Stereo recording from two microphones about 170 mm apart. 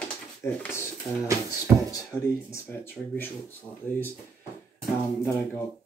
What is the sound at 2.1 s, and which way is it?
Speech, 5° left (ahead or behind).